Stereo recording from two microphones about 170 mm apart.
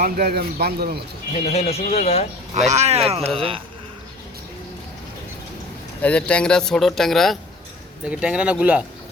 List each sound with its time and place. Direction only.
0.0 s speech: 65° right (ahead or behind)
1.5 s speech: 35° left (ahead or behind)
2.6 s speech: 40° right (ahead or behind)
6.0 s speech: 10° left (ahead or behind)